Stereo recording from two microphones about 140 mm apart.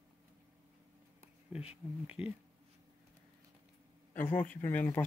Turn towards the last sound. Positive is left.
turn(degrees=15)  # may be behind; listen again after turning